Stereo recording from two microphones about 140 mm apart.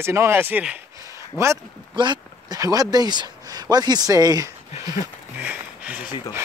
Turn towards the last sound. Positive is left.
turn(degrees=-10)  # may be behind; listen again after turning